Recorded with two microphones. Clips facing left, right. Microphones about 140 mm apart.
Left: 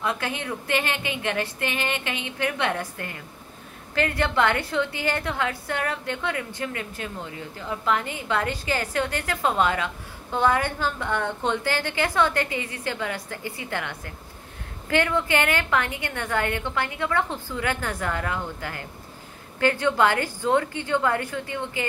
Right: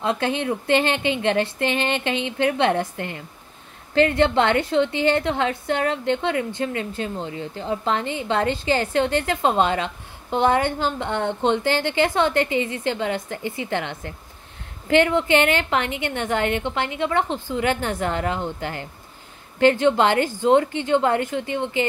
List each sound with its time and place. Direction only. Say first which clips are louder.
0.0 s a woman's voice: right 6 dB; 25° right (ahead or behind)